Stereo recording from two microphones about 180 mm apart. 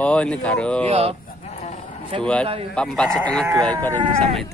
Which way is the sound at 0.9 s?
35° right (ahead or behind).